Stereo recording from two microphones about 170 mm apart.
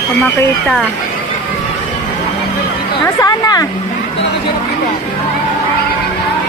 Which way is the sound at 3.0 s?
20° left (ahead or behind).